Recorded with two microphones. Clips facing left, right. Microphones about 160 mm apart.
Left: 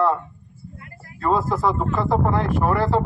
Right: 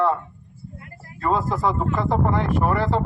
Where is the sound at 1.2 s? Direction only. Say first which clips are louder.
Left 1 dB; centre (ahead or behind).